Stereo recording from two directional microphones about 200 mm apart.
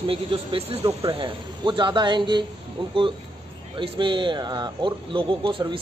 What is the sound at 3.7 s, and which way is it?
Speech, 25° right (ahead or behind).